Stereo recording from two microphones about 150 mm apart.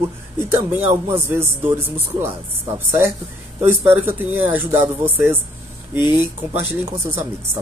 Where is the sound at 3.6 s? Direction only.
15° right (ahead or behind).